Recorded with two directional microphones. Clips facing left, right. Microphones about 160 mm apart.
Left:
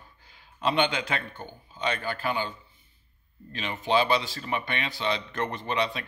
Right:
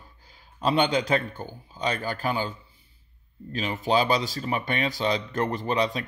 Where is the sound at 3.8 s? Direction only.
40° right (ahead or behind).